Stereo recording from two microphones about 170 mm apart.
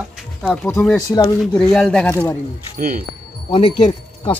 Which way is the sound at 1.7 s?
5° left (ahead or behind).